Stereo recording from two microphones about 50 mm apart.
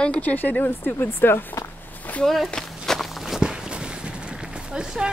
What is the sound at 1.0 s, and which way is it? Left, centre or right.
Speech, left.